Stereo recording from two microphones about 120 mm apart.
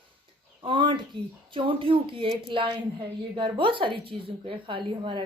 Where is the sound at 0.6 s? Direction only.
40° right (ahead or behind).